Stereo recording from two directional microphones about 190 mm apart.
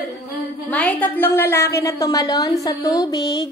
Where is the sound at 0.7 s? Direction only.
5° left (ahead or behind).